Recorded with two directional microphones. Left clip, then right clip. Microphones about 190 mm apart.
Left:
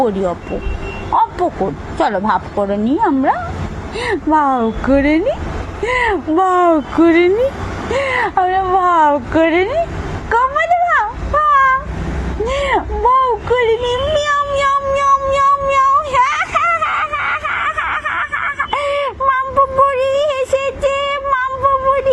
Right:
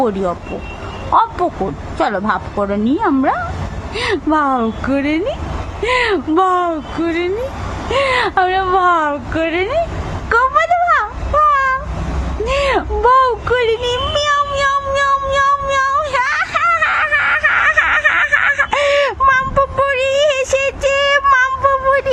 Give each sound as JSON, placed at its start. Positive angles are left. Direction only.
{"t": 0.0, "sound": "speech", "side_deg": -15}
{"t": 1.4, "sound": "speech", "side_deg": -5}
{"t": 6.0, "sound": "speech", "side_deg": -25}
{"t": 6.5, "sound": "speech", "side_deg": 10}
{"t": 7.9, "sound": "speech", "side_deg": -15}
{"t": 9.0, "sound": "speech", "side_deg": 0}
{"t": 10.2, "sound": "a sound", "side_deg": -10}
{"t": 12.6, "sound": "a sound", "side_deg": -20}